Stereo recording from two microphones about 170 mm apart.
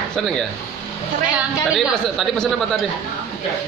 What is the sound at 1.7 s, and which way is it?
Speech, 5° right (ahead or behind).